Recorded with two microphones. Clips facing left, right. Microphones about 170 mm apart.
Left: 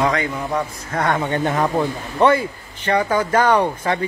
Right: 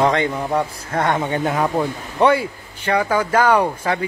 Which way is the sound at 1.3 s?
5° right (ahead or behind).